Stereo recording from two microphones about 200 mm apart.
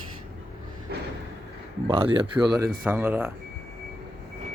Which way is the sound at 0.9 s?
55° right (ahead or behind).